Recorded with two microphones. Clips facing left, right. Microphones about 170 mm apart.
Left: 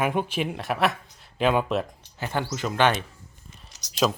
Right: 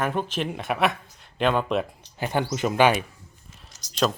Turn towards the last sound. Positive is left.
turn(degrees=5)  # may be behind; listen again after turning